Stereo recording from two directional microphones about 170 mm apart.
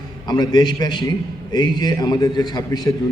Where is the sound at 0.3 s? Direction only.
25° left (ahead or behind).